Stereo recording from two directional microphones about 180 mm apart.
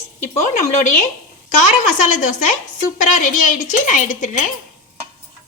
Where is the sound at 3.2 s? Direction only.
45° left (ahead or behind).